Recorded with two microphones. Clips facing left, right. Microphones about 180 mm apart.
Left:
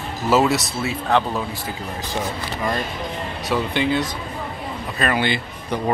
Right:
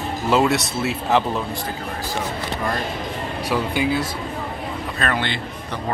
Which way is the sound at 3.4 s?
10° right (ahead or behind).